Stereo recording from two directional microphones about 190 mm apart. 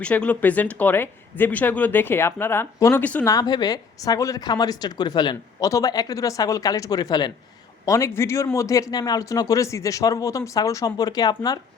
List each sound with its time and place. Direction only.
0.0 s speech: 5° left (ahead or behind)
3.3 s a woman's voice: 20° left (ahead or behind)